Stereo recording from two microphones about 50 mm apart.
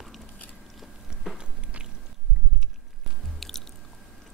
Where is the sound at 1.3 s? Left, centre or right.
Centre.